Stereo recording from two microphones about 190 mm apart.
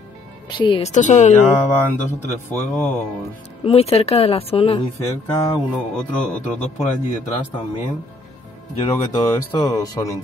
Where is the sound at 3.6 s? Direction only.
30° left (ahead or behind).